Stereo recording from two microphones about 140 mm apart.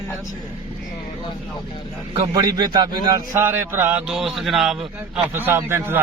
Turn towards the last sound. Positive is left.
turn(degrees=-15)  # may be behind; listen again after turning